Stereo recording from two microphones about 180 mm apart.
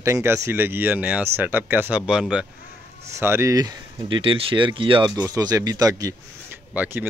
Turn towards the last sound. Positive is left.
turn(degrees=-10)  # may be behind; listen again after turning